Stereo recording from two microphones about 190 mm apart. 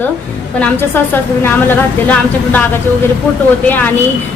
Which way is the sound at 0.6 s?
10° left (ahead or behind).